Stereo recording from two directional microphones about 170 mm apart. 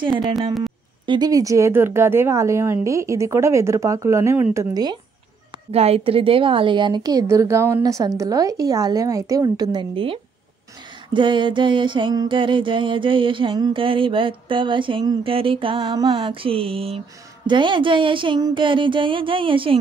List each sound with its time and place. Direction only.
0.1 s speech: centre (ahead or behind)
1.0 s speech: 25° right (ahead or behind)
5.7 s a sound: 35° right (ahead or behind)